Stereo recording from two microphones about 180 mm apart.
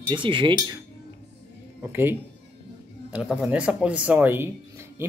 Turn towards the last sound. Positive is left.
turn(degrees=-10)  # may be behind; listen again after turning